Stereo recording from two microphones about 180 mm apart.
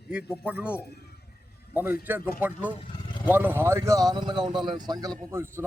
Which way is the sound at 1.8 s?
55° left (ahead or behind).